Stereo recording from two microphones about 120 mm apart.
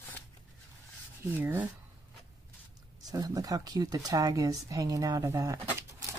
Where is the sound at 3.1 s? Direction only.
30° right (ahead or behind).